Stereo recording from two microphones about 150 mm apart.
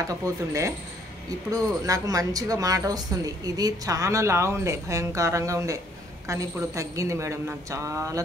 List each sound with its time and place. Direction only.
0.0 s a woman's voice: 20° right (ahead or behind)